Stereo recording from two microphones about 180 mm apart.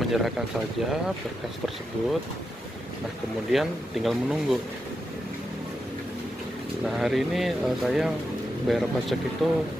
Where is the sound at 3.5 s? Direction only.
Centre (ahead or behind).